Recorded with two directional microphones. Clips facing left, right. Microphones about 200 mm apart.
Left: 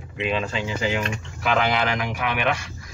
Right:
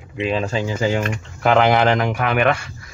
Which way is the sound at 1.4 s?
55° right (ahead or behind).